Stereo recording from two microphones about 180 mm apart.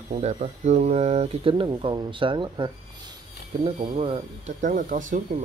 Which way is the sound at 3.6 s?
35° right (ahead or behind).